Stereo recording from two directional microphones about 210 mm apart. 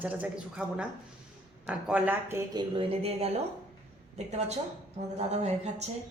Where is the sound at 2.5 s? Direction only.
25° right (ahead or behind).